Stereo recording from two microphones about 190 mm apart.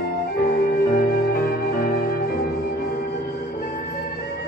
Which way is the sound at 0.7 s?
50° left (ahead or behind).